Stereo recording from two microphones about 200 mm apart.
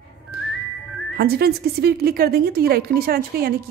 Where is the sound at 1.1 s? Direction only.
50° right (ahead or behind).